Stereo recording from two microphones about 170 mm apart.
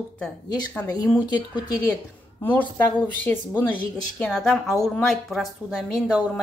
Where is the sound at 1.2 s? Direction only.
25° left (ahead or behind).